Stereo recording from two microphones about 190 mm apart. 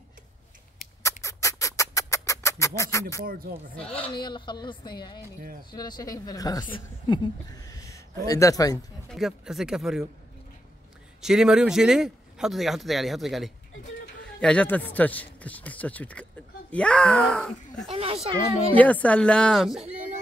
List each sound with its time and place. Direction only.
1.2 s bird: 15° left (ahead or behind)
3.3 s speech: 50° right (ahead or behind)
3.9 s a woman's voice: 25° left (ahead or behind)
7.6 s a sound: 15° left (ahead or behind)
8.3 s a man's voice: 15° left (ahead or behind)
9.1 s speech: centre (ahead or behind)
11.1 s a man's voice: 5° right (ahead or behind)
17.9 s speech: 30° right (ahead or behind)
18.8 s speech: 10° left (ahead or behind)